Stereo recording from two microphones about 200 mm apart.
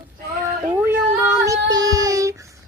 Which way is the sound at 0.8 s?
10° right (ahead or behind).